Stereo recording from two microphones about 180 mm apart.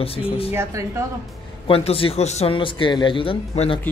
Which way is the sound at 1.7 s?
30° left (ahead or behind).